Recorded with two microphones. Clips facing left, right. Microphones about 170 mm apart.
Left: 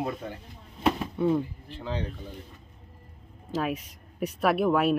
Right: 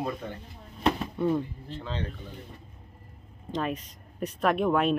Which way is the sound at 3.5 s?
5° left (ahead or behind).